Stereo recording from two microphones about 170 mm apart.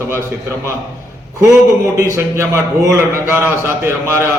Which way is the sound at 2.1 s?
15° right (ahead or behind).